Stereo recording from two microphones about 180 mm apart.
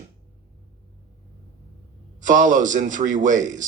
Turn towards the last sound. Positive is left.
turn(degrees=-45)  # may be behind; listen again after turning